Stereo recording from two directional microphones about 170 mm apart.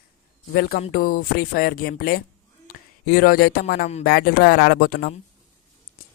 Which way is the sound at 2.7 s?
65° left (ahead or behind).